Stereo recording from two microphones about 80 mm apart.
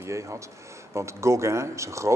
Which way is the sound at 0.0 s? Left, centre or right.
Right.